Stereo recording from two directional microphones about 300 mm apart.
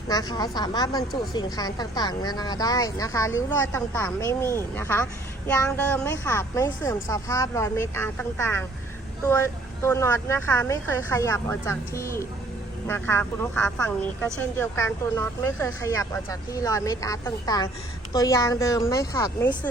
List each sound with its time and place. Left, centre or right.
0.1 s speech: centre